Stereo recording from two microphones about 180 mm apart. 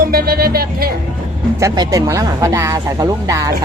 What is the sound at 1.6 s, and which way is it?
Speech, 20° right (ahead or behind).